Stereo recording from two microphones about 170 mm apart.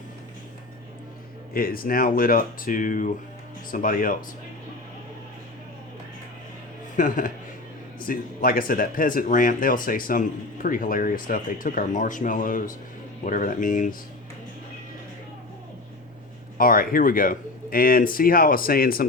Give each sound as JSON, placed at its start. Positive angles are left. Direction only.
{"t": 1.5, "sound": "speech", "side_deg": 60}
{"t": 6.9, "sound": "speech", "side_deg": 50}
{"t": 16.6, "sound": "speech", "side_deg": 55}